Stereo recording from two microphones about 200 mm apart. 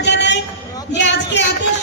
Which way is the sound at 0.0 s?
60° left (ahead or behind).